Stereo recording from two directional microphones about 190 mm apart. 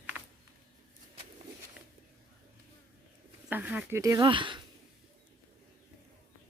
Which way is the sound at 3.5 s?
10° right (ahead or behind).